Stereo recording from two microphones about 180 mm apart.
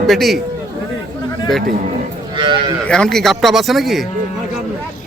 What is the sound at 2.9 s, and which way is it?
Speech, 5° left (ahead or behind).